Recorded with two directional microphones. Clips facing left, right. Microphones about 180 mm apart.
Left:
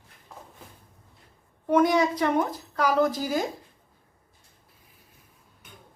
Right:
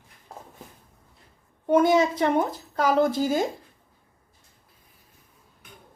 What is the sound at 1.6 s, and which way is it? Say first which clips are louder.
Speech: right 2 dB; 25° right (ahead or behind).